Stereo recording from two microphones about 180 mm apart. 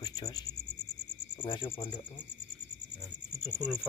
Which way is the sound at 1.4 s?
25° left (ahead or behind).